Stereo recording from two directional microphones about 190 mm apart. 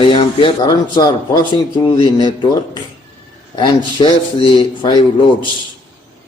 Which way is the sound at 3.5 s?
25° left (ahead or behind).